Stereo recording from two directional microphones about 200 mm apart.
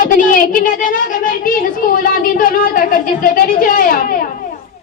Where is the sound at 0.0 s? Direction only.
45° left (ahead or behind).